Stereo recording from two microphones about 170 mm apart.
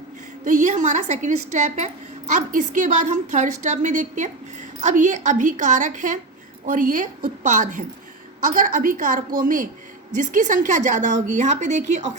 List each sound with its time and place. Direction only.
0.4 s a woman's voice: 45° right (ahead or behind)